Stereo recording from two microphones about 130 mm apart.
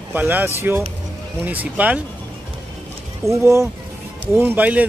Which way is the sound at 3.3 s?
25° right (ahead or behind).